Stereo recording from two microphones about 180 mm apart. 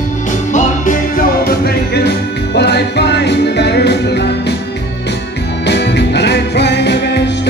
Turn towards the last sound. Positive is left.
turn(degrees=70)  # may be behind; listen again after turning